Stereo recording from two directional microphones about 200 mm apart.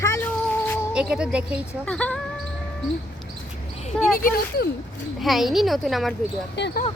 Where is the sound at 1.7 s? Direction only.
5° left (ahead or behind).